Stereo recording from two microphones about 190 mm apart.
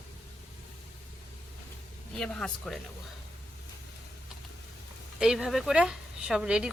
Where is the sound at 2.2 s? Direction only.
5° left (ahead or behind).